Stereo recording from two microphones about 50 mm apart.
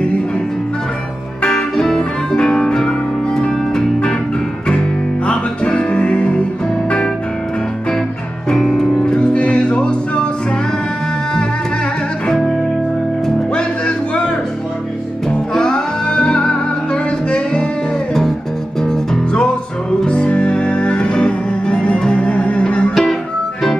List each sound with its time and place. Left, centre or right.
1.5 s music: centre
8.5 s music: centre
12.3 s music: centre
13.5 s music: centre
15.5 s music: centre
18.8 s music: centre